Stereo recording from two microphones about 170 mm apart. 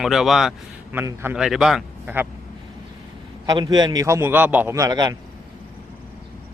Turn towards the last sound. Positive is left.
turn(degrees=-20)  # may be behind; listen again after turning